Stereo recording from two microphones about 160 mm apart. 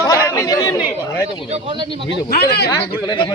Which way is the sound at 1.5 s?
40° right (ahead or behind).